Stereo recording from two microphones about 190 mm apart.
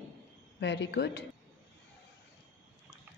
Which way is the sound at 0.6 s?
65° left (ahead or behind).